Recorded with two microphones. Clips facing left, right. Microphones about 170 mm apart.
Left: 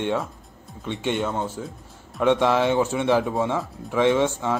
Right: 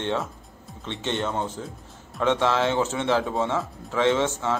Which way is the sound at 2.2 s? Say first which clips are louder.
Left 3 dB; 15° left (ahead or behind).